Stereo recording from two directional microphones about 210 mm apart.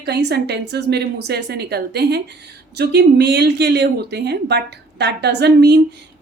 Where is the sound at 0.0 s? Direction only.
50° right (ahead or behind).